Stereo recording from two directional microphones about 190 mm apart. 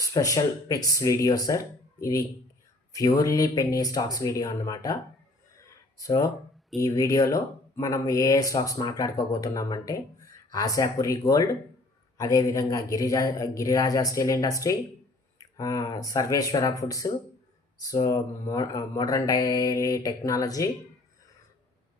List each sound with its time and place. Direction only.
0.0 s speech: 20° left (ahead or behind)
5.5 s a sound: 15° left (ahead or behind)
6.7 s speech: 20° left (ahead or behind)